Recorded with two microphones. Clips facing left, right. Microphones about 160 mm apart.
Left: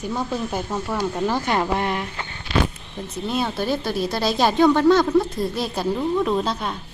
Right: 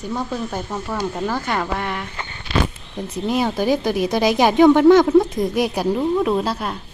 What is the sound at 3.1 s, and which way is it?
A woman's voice, 10° right (ahead or behind).